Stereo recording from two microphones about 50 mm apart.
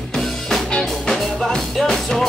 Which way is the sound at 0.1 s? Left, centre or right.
Centre.